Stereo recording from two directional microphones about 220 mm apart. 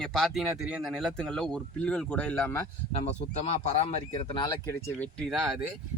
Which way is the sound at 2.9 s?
30° left (ahead or behind).